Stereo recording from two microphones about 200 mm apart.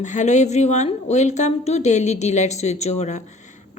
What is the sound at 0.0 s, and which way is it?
A woman's voice, 35° left (ahead or behind).